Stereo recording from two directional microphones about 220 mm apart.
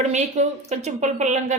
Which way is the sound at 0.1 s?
30° right (ahead or behind).